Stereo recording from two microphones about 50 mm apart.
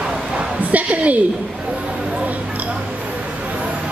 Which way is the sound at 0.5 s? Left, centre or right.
Right.